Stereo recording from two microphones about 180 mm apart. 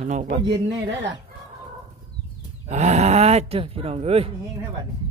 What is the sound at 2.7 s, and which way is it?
Speech, 40° right (ahead or behind).